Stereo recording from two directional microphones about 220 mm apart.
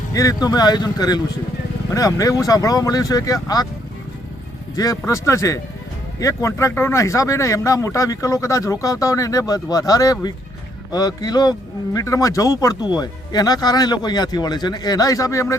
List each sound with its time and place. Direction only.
0.1 s speech: 15° left (ahead or behind)
4.7 s speech: 15° left (ahead or behind)